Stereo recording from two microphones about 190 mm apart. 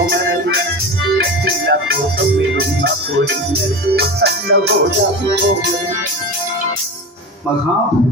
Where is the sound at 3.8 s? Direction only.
55° right (ahead or behind).